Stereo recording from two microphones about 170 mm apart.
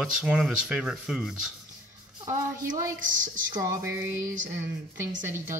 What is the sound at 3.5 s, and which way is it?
Speech, 20° right (ahead or behind).